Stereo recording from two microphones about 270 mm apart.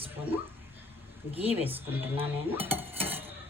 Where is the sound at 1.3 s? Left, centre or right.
Right.